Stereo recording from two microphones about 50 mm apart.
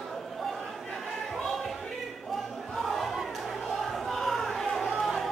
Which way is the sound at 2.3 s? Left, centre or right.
Centre.